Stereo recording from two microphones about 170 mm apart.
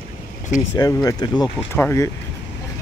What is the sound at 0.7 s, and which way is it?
Speech, 20° left (ahead or behind).